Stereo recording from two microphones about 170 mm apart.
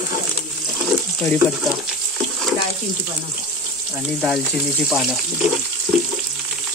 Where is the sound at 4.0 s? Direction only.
5° right (ahead or behind).